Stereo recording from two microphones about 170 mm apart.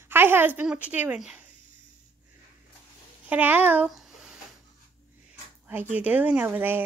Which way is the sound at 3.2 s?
10° right (ahead or behind).